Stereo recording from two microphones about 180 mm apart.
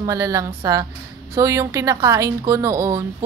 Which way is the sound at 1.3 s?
15° right (ahead or behind).